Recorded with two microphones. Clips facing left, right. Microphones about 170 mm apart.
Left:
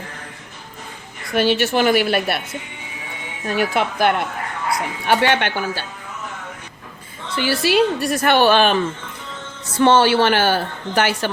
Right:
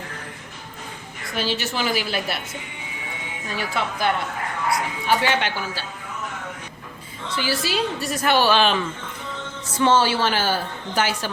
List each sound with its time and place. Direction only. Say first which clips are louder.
1.4 s a woman's voice: left 8 dB; 65° left (ahead or behind)
3.4 s a woman's voice: left 7 dB; 65° left (ahead or behind)
7.3 s a woman's voice: left 7 dB; 65° left (ahead or behind)
9.7 s a woman's voice: left 5 dB; 65° left (ahead or behind)